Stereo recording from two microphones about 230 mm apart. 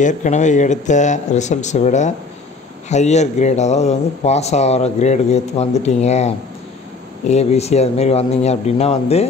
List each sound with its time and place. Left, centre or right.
0.0 s speech: left